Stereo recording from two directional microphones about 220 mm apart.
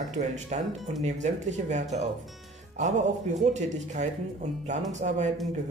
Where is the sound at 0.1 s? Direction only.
30° right (ahead or behind).